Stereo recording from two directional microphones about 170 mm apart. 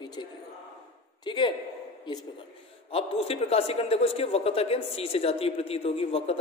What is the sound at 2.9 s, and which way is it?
A man's voice, 35° left (ahead or behind).